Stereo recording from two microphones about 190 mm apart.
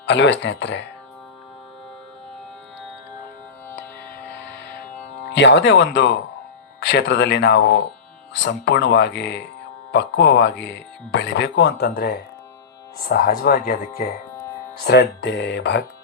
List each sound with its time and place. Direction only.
0.0 s speech: 70° left (ahead or behind)
5.3 s speech: 70° left (ahead or behind); by 14.0 s 50° left (ahead or behind)
14.8 s speech: 65° left (ahead or behind)